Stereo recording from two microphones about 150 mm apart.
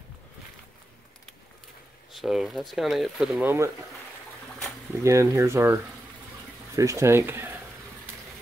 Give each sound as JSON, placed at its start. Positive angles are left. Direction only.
{"t": 2.1, "sound": "speech", "side_deg": 0}
{"t": 3.4, "sound": "speech", "side_deg": -20}
{"t": 5.0, "sound": "speech", "side_deg": -20}